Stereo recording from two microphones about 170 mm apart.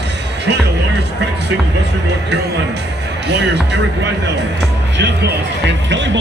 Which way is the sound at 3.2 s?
90° right.